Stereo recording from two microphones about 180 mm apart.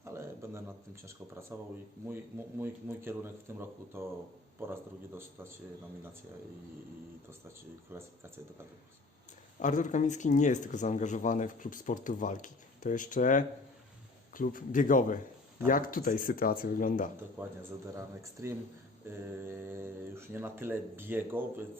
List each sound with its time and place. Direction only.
0.0 s a sound: 15° right (ahead or behind)
1.0 s speech: 15° right (ahead or behind)
2.6 s speech: 15° right (ahead or behind)
7.9 s speech: 15° right (ahead or behind)
9.6 s speech: 45° left (ahead or behind)
17.6 s speech: 15° right (ahead or behind)